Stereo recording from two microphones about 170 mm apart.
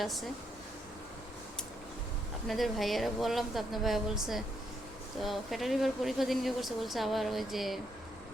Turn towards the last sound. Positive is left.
turn(degrees=0)  # may be behind; listen again after turning